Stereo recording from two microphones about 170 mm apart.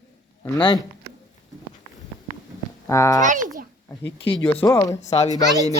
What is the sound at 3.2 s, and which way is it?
Speech, 50° right (ahead or behind).